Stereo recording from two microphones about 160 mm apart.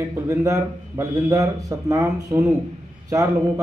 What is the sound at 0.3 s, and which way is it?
Speech, 15° right (ahead or behind).